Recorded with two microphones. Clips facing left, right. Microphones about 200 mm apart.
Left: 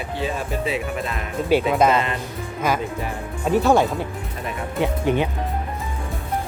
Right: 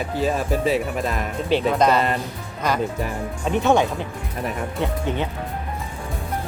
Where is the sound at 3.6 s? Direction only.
Centre (ahead or behind).